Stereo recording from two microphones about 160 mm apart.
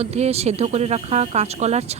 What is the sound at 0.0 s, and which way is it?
Speech, 40° right (ahead or behind).